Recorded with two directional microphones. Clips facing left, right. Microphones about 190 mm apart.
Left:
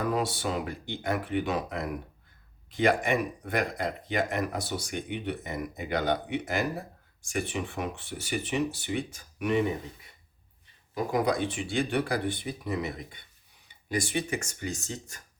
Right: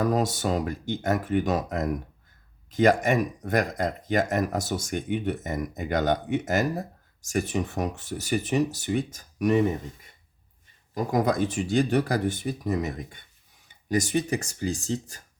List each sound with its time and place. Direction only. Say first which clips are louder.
0.0 s speech: right 4 dB; 40° right (ahead or behind)
10.9 s speech: right 3 dB; 40° right (ahead or behind)